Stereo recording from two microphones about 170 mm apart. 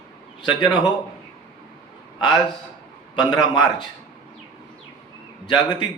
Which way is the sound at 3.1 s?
25° left (ahead or behind).